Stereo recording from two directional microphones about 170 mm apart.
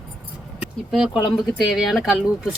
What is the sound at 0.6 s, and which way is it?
Speech, 5° right (ahead or behind).